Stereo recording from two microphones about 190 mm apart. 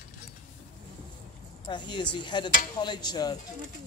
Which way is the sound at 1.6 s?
25° left (ahead or behind).